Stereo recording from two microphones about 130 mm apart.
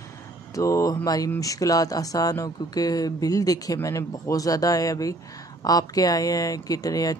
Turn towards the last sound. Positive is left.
turn(degrees=30)  # may be behind; listen again after turning